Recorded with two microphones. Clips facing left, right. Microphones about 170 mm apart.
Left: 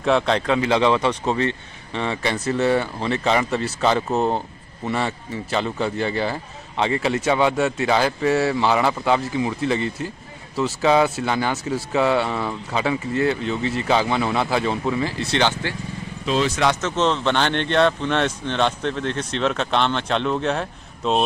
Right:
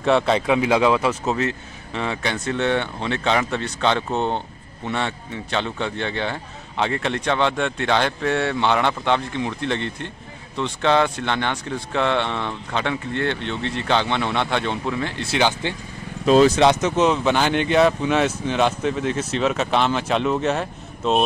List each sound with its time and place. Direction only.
0.0 s speech: centre (ahead or behind)
16.3 s speech: 45° right (ahead or behind)
16.5 s speech: 20° right (ahead or behind)
16.9 s speech: 10° right (ahead or behind)